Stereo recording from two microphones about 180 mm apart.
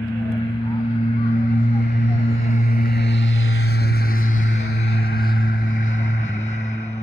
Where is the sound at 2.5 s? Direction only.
50° left (ahead or behind).